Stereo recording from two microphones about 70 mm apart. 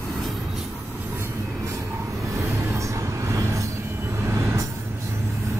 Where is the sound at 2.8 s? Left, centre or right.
Right.